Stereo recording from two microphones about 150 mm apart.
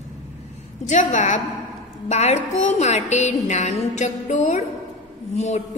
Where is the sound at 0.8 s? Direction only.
50° left (ahead or behind).